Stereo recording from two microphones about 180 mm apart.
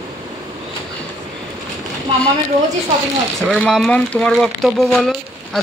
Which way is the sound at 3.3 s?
5° left (ahead or behind).